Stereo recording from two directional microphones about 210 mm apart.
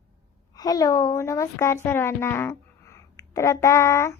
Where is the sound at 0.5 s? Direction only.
15° left (ahead or behind).